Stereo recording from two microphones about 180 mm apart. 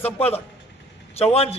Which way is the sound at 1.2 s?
35° left (ahead or behind).